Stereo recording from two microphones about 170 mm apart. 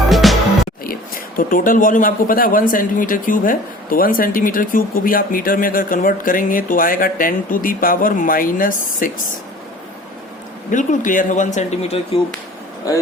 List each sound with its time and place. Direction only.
0.1 s music: centre (ahead or behind)
1.4 s speech: 55° left (ahead or behind)
10.7 s speech: 50° left (ahead or behind)